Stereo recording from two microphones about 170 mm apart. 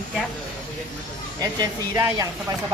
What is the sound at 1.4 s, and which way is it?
Speech, 20° right (ahead or behind).